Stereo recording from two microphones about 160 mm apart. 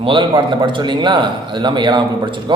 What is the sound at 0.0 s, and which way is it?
A man's voice, 30° right (ahead or behind).